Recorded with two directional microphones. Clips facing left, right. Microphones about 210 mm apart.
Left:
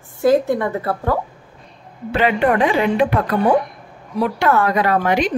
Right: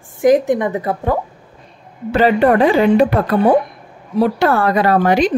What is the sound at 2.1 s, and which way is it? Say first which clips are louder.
A woman's voice: right 4 dB; 40° right (ahead or behind).